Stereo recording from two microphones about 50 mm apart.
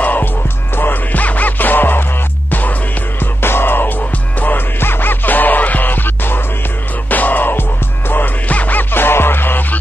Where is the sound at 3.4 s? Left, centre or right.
Left.